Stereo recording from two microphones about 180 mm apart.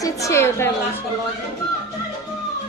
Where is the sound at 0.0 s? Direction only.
15° left (ahead or behind).